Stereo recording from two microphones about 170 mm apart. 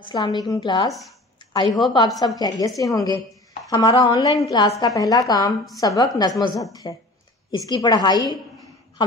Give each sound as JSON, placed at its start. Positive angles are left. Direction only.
{"t": 0.0, "sound": "a woman's voice", "side_deg": 25}